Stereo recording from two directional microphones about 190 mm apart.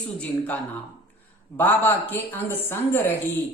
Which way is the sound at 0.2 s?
5° left (ahead or behind).